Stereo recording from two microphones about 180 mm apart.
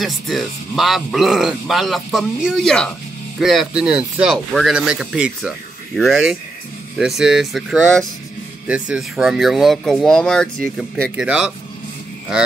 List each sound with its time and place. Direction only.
0.0 s speech: centre (ahead or behind)